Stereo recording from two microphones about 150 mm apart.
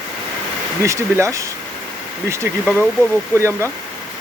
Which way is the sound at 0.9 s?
20° right (ahead or behind).